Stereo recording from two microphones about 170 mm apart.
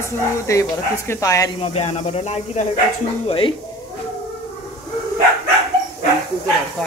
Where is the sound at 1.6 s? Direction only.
40° left (ahead or behind).